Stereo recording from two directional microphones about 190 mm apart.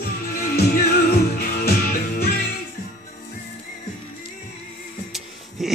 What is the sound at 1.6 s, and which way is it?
Music, 55° left (ahead or behind).